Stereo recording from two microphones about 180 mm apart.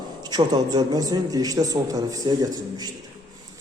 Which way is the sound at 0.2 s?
20° right (ahead or behind).